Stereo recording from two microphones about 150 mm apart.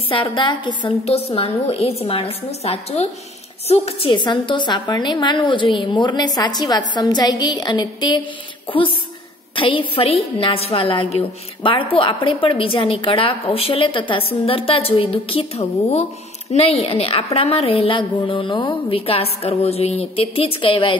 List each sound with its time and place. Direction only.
0.1 s a woman's voice: 35° left (ahead or behind)
1.0 s a woman's voice: 40° left (ahead or behind)